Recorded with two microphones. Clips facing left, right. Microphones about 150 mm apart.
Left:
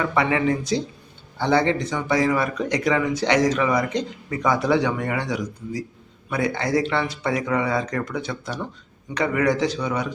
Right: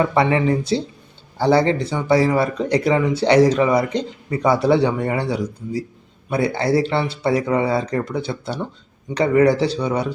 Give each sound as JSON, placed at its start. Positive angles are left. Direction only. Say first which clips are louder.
{"t": 0.0, "sound": "speech", "louder": "right 4 dB", "side_deg": -30}